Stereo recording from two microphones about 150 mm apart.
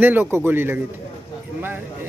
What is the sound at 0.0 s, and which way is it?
Speech, 15° right (ahead or behind).